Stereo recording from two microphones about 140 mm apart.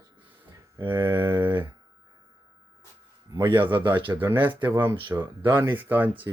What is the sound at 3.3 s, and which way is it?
Speech, 30° right (ahead or behind).